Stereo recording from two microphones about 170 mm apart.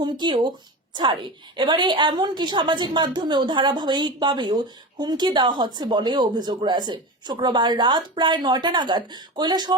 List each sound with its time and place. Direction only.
0.0 s a woman's voice: 25° right (ahead or behind)
1.5 s a woman's voice: 25° right (ahead or behind)